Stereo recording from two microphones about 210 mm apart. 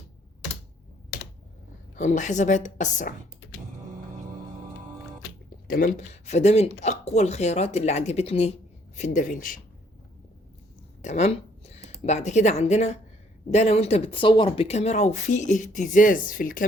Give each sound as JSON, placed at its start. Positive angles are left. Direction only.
{"t": 2.0, "sound": "speech", "side_deg": 35}
{"t": 5.6, "sound": "speech", "side_deg": 40}
{"t": 11.0, "sound": "speech", "side_deg": 35}